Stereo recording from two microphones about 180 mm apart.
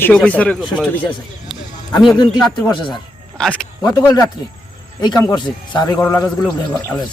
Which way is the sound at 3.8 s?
15° left (ahead or behind).